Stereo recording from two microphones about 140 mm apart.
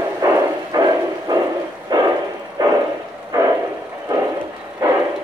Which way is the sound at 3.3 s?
25° right (ahead or behind).